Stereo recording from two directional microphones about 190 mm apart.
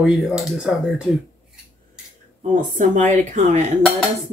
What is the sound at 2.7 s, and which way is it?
A woman's voice, 40° right (ahead or behind).